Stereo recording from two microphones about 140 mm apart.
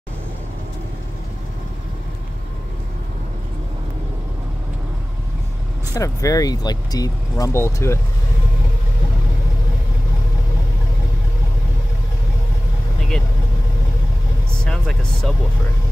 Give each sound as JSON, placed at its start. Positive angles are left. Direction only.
{"t": 5.9, "sound": "speech", "side_deg": 25}
{"t": 14.5, "sound": "vehicle", "side_deg": 5}